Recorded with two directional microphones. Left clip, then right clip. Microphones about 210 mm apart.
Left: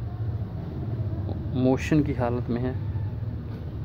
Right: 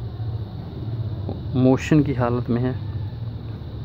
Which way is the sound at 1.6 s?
20° right (ahead or behind).